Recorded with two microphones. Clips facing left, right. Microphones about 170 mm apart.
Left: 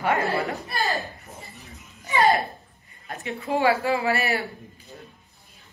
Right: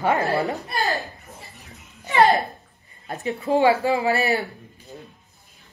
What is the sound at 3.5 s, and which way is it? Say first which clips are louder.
Speech: right 3 dB; 20° right (ahead or behind).